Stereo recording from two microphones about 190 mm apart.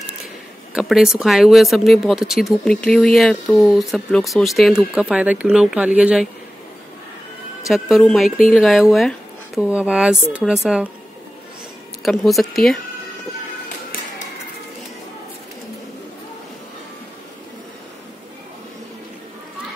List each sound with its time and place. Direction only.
0.7 s speech: centre (ahead or behind)
7.6 s speech: centre (ahead or behind)
12.0 s speech: centre (ahead or behind)